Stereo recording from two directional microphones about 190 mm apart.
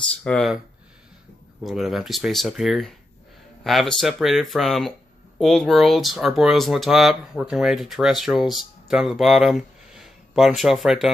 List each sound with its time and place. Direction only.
0.2 s speech: 5° left (ahead or behind)
1.6 s speech: centre (ahead or behind)